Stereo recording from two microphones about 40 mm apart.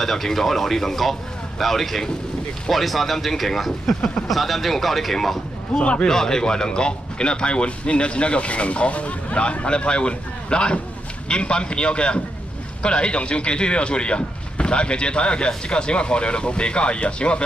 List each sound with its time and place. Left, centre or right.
0.0 s speech: centre
5.8 s speech: left
6.0 s speech: centre